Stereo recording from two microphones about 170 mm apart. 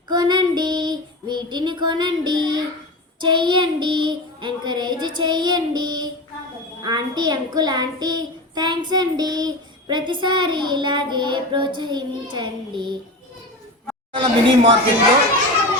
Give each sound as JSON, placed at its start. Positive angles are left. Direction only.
{"t": 0.1, "sound": "child singing", "side_deg": -25}
{"t": 3.2, "sound": "a child's voice", "side_deg": -25}
{"t": 14.1, "sound": "a child's voice", "side_deg": -30}